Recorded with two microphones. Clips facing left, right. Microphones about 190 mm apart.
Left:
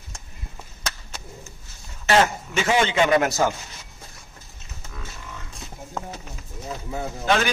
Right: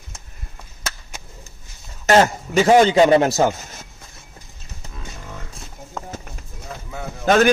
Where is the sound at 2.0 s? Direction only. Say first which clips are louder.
Right 4 dB; 40° right (ahead or behind).